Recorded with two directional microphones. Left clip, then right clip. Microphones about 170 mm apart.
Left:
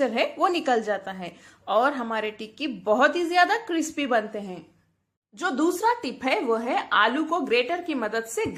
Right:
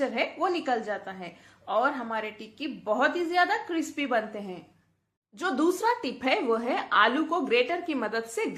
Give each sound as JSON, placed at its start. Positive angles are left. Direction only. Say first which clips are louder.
{"t": 0.0, "sound": "a woman's voice", "louder": "left 5 dB", "side_deg": 35}